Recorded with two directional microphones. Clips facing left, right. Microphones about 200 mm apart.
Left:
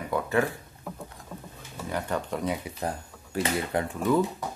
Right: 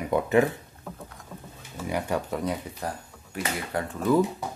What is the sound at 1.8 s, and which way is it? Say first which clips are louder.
Speech: right 2 dB; 10° right (ahead or behind).